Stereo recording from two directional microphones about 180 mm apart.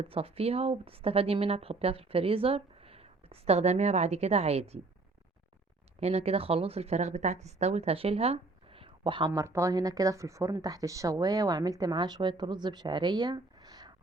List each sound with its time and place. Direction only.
0.0 s a woman's voice: 30° right (ahead or behind)
6.0 s speech: 35° right (ahead or behind)